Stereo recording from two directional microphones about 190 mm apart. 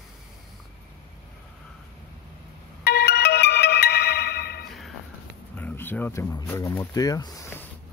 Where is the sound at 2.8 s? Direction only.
55° left (ahead or behind).